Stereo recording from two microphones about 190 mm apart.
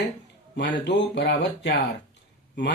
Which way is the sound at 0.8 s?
65° left (ahead or behind).